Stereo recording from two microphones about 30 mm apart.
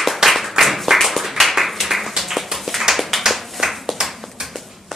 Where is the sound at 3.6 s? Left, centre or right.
Right.